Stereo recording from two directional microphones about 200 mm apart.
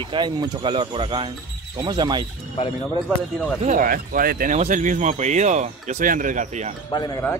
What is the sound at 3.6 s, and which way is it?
Speech, 40° right (ahead or behind).